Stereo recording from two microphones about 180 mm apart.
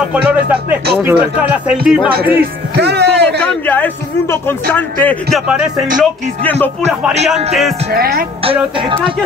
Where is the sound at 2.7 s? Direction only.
65° right (ahead or behind).